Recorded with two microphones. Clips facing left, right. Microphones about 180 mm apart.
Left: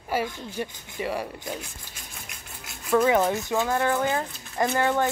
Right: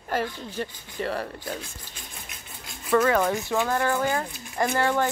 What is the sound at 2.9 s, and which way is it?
A woman's voice, 10° left (ahead or behind).